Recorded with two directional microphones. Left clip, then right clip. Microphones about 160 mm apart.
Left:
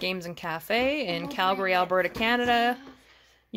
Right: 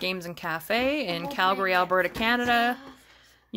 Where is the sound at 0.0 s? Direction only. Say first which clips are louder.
Right 1 dB; 5° left (ahead or behind).